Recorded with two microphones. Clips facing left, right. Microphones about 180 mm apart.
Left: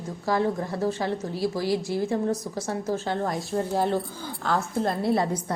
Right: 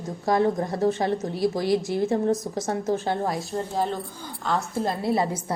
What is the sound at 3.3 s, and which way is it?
A woman's voice, centre (ahead or behind).